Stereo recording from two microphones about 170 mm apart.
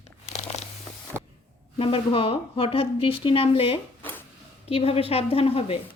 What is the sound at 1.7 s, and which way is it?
A woman's voice, 35° left (ahead or behind).